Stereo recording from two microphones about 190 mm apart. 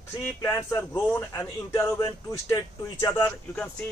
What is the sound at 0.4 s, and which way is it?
Speech, 20° left (ahead or behind).